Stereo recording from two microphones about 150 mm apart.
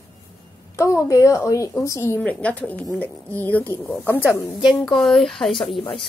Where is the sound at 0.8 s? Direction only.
20° left (ahead or behind).